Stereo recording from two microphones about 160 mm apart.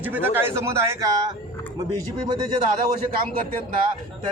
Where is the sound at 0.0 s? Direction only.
10° right (ahead or behind).